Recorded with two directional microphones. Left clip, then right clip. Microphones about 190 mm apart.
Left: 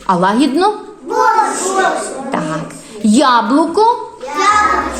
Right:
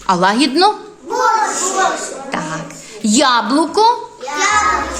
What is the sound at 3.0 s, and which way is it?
Speech, 25° right (ahead or behind).